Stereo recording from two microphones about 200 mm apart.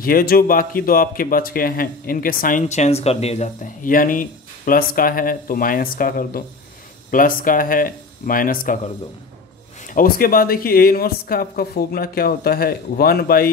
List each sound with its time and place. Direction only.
0.0 s speech: 45° left (ahead or behind)
9.8 s speech: 45° left (ahead or behind)